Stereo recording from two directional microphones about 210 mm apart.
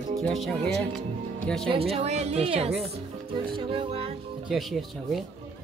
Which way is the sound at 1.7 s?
30° right (ahead or behind).